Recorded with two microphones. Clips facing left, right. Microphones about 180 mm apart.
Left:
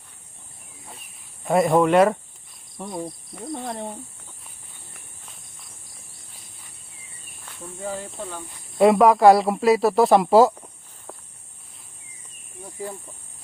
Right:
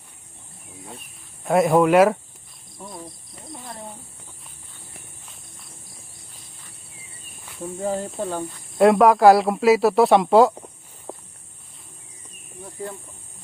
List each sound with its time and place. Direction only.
1.5 s speech: centre (ahead or behind)
5.2 s walk: centre (ahead or behind)
7.8 s speech: 40° right (ahead or behind)
8.8 s speech: centre (ahead or behind)
11.1 s a sound: 30° right (ahead or behind)